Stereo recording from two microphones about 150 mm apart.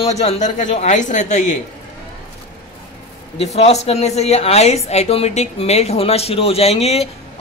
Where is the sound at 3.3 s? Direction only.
45° left (ahead or behind).